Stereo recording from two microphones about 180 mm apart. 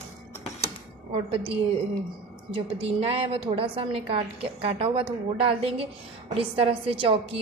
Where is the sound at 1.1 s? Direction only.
30° right (ahead or behind).